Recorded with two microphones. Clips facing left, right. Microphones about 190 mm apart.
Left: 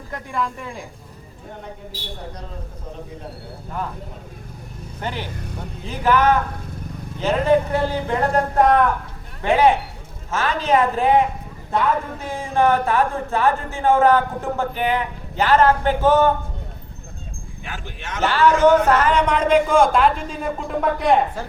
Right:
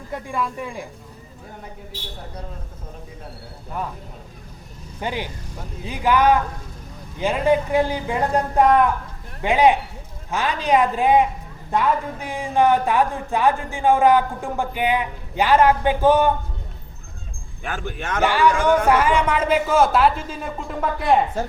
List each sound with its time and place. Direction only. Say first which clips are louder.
0.3 s speech: left 1 dB; 5° right (ahead or behind)
4.9 s speech: right 1 dB; 10° right (ahead or behind)
12.2 s speech: right 1 dB; 15° right (ahead or behind)
17.6 s speech: right 7 dB; 50° right (ahead or behind)
18.2 s speech: left 3 dB; 15° right (ahead or behind)